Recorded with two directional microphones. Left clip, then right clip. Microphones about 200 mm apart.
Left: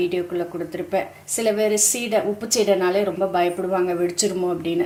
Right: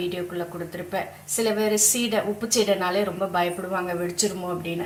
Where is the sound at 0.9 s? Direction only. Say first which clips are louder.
Left 5 dB; 30° left (ahead or behind).